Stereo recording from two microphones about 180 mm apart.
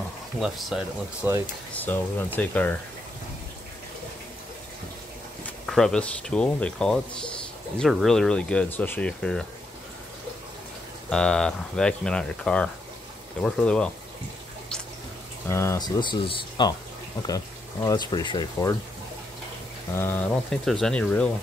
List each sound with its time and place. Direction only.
0.4 s speech: centre (ahead or behind)
1.7 s speech: 10° left (ahead or behind)
5.7 s speech: centre (ahead or behind)
11.1 s speech: 5° left (ahead or behind)
15.5 s speech: 15° left (ahead or behind)
16.0 s speech: 25° left (ahead or behind)
17.8 s speech: 25° left (ahead or behind)
20.0 s speech: 10° left (ahead or behind)